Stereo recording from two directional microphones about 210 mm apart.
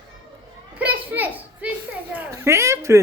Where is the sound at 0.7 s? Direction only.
5° right (ahead or behind).